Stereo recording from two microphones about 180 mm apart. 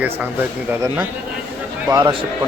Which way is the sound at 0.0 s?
10° right (ahead or behind).